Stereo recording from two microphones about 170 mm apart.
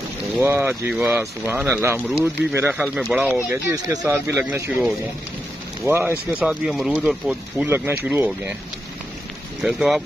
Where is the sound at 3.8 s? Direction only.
20° right (ahead or behind).